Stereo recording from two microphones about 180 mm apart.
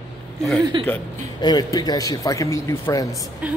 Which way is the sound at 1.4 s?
20° left (ahead or behind).